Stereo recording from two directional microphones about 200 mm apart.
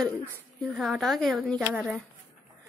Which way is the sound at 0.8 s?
Centre (ahead or behind).